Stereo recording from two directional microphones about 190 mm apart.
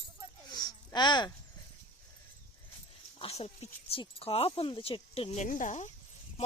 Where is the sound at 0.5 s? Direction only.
20° left (ahead or behind).